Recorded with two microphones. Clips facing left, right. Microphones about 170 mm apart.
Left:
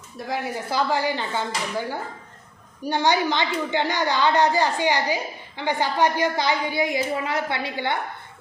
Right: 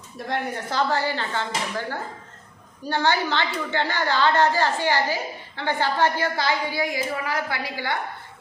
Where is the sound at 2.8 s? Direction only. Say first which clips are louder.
Left 2 dB; 15° left (ahead or behind).